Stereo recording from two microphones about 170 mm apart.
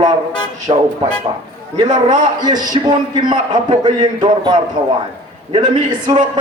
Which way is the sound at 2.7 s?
25° right (ahead or behind).